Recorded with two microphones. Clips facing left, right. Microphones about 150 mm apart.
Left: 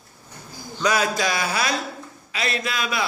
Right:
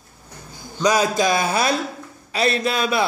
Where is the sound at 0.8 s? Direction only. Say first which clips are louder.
Right 4 dB; 20° right (ahead or behind).